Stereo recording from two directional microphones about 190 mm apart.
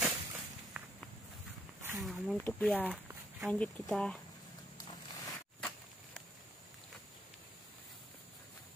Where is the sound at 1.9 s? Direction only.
Centre (ahead or behind).